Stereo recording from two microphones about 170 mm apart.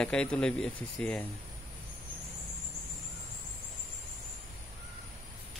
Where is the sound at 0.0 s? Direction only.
5° left (ahead or behind).